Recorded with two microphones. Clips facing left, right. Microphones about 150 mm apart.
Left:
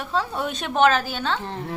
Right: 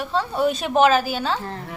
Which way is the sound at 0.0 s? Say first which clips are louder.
Right 4 dB; centre (ahead or behind).